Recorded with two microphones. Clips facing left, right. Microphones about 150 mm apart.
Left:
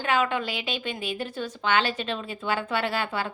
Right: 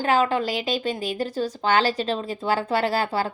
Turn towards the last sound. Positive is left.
turn(degrees=-35)  # may be behind; listen again after turning